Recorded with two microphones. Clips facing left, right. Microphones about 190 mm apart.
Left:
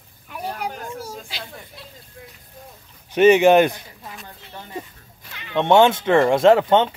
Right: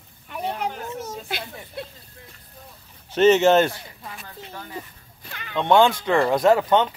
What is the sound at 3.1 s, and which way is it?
Speech, 15° left (ahead or behind).